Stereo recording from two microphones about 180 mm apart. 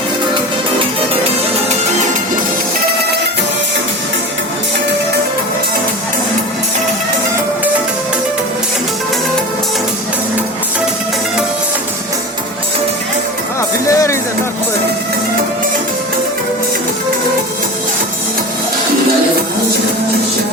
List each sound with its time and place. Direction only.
13.9 s music: 15° left (ahead or behind)